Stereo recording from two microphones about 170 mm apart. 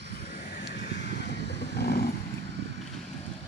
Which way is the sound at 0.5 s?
70° left (ahead or behind).